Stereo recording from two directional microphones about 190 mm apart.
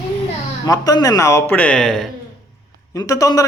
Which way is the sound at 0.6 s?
20° left (ahead or behind).